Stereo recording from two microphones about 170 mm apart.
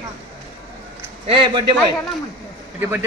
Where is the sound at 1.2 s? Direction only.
30° right (ahead or behind).